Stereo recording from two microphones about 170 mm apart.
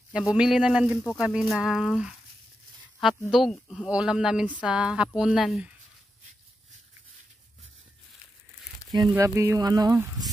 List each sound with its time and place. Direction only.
0.3 s speech: 5° right (ahead or behind)
9.1 s speech: 15° right (ahead or behind)